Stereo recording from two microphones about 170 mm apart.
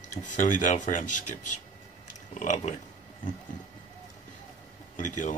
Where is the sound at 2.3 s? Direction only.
45° left (ahead or behind).